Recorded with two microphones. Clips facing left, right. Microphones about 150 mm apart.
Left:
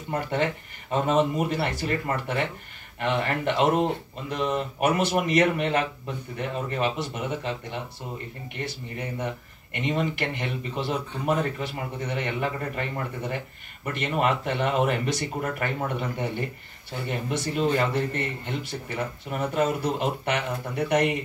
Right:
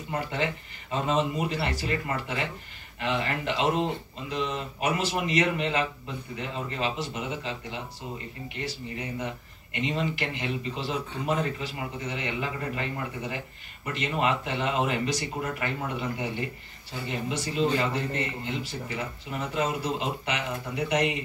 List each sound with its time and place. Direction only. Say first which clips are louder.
0.1 s speech: left 4 dB; 55° left (ahead or behind)